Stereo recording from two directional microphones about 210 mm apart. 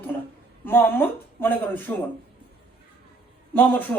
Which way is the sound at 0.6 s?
10° left (ahead or behind).